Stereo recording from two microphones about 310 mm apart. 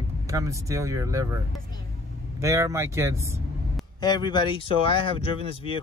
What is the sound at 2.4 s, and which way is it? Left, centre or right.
Speech, centre.